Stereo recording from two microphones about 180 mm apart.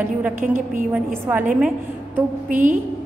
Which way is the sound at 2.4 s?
45° right (ahead or behind).